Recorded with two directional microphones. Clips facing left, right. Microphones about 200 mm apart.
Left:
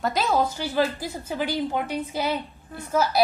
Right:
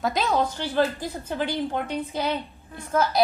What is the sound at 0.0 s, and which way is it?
A woman's voice, centre (ahead or behind).